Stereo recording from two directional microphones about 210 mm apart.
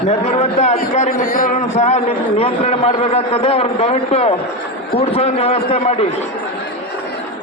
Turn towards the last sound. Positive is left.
turn(degrees=30)  # may be behind; listen again after turning